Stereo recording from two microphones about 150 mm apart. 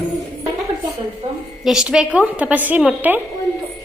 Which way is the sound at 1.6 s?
5° right (ahead or behind).